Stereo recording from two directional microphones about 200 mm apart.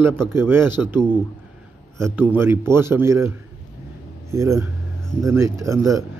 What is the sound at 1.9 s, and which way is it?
A man's voice, 15° right (ahead or behind).